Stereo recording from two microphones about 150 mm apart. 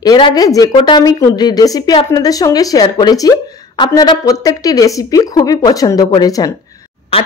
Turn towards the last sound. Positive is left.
turn(degrees=40)  # may be behind; listen again after turning